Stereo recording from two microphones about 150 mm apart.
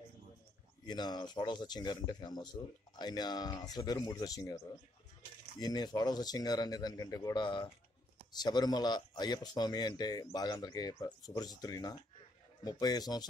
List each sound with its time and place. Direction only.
0.8 s speech: 30° left (ahead or behind)
5.6 s speech: 25° left (ahead or behind)